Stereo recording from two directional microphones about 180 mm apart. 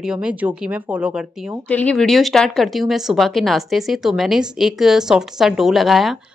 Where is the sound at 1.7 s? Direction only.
5° left (ahead or behind).